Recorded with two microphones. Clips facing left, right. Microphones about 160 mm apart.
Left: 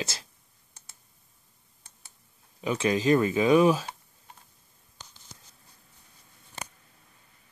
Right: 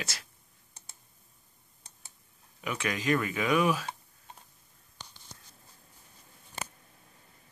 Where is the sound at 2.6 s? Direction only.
30° left (ahead or behind).